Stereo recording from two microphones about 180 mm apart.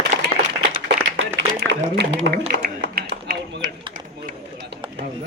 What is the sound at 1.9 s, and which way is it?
Speech, 70° right (ahead or behind).